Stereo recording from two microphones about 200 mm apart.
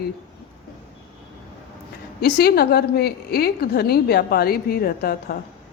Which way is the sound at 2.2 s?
50° left (ahead or behind).